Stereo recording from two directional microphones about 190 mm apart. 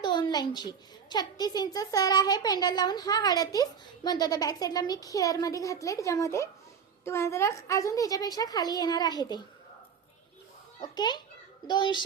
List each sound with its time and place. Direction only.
0.0 s a woman's voice: 20° left (ahead or behind)
10.8 s a child's voice: 20° left (ahead or behind)